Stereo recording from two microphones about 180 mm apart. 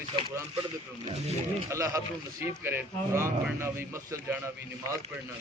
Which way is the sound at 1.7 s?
20° right (ahead or behind).